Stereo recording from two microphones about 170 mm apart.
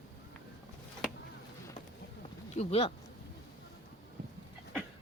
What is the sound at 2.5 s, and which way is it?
Speech, 35° left (ahead or behind).